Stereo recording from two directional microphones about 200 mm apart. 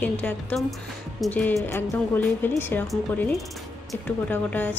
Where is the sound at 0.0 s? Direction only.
10° left (ahead or behind).